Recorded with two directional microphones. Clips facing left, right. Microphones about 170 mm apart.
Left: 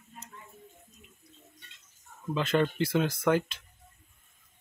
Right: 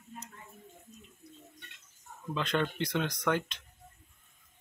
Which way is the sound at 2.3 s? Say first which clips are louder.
Left 5 dB; 5° left (ahead or behind).